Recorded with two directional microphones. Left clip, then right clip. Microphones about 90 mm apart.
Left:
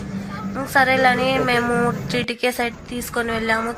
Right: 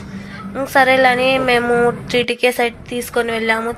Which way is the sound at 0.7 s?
25° right (ahead or behind).